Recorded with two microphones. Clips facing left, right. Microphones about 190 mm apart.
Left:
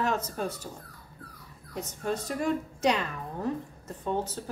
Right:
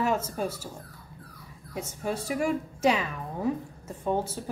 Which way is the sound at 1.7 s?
10° right (ahead or behind).